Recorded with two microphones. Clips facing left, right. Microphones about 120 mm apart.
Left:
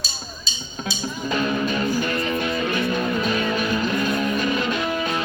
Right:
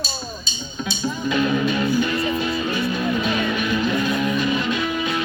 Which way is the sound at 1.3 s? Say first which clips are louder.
Right 2 dB; 40° left (ahead or behind).